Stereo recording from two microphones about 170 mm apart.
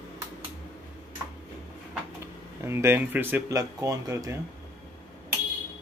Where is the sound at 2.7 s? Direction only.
15° right (ahead or behind).